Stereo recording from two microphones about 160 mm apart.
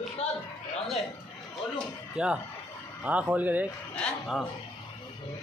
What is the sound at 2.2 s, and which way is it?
Speech, 5° right (ahead or behind).